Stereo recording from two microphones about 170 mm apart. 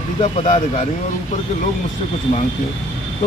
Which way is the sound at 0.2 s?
45° left (ahead or behind).